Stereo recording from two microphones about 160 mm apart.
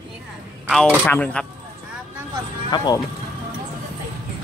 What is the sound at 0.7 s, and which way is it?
Speech, 5° left (ahead or behind).